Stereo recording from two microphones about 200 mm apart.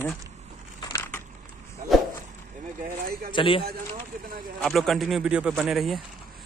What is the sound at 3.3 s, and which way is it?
Speech, 25° left (ahead or behind).